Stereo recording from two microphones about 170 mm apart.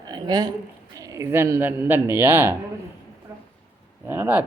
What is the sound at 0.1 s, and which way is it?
A woman's voice, 25° right (ahead or behind).